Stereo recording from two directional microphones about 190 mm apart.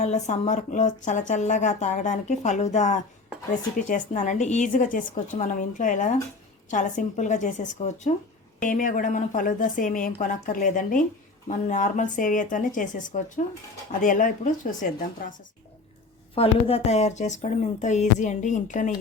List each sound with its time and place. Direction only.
0.0 s a woman's voice: 35° left (ahead or behind)
16.3 s speech: 30° left (ahead or behind)